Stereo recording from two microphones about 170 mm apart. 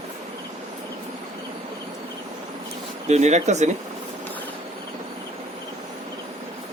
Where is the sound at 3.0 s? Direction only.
40° right (ahead or behind).